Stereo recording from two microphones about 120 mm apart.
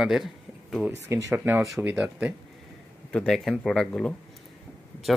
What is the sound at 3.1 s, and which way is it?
Speech, 5° left (ahead or behind).